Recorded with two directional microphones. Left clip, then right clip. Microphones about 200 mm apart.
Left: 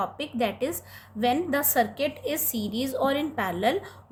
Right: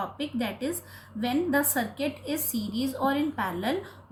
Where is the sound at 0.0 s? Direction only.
50° left (ahead or behind).